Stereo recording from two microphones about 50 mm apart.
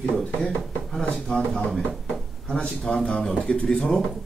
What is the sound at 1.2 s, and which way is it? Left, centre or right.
A man's voice, centre.